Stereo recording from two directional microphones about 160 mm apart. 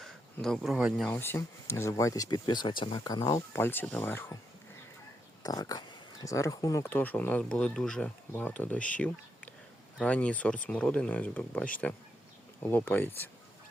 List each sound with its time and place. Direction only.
0.0 s speech: 5° left (ahead or behind)
1.0 s speech: 10° left (ahead or behind)
5.4 s speech: 25° left (ahead or behind)